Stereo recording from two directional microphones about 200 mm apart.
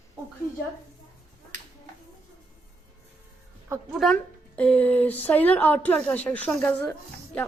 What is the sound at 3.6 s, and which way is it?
Speech, 15° right (ahead or behind).